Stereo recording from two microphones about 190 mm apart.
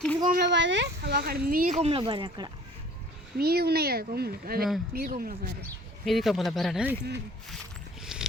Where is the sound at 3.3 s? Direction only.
55° right (ahead or behind).